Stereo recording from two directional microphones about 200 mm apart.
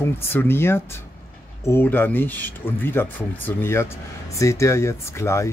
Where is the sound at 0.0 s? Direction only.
10° left (ahead or behind).